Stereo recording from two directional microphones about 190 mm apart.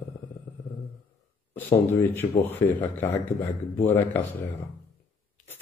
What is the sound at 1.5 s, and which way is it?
Speech, 10° left (ahead or behind).